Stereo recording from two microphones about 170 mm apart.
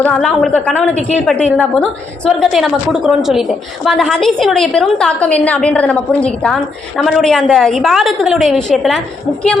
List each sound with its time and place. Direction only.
0.0 s a woman's voice: 5° left (ahead or behind)